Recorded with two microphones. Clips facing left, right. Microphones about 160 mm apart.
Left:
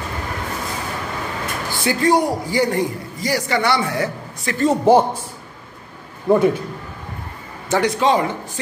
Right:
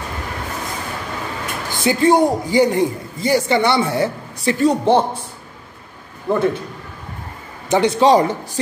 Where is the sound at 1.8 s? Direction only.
20° right (ahead or behind).